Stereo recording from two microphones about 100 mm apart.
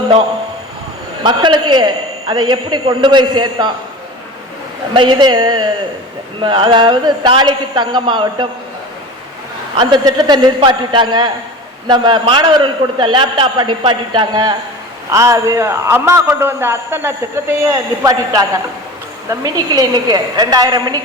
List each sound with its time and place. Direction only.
1.2 s a man's voice: 50° right (ahead or behind)
4.9 s a man's voice: 50° right (ahead or behind)
9.7 s a man's voice: 50° right (ahead or behind)
15.1 s a man's voice: 30° right (ahead or behind)
17.7 s a woman's voice: 35° right (ahead or behind)